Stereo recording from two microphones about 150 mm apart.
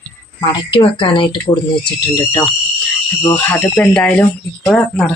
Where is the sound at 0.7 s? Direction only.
35° left (ahead or behind).